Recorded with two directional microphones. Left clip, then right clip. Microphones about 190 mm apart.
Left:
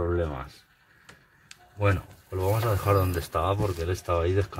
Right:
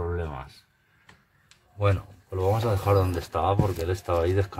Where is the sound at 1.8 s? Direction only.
25° right (ahead or behind).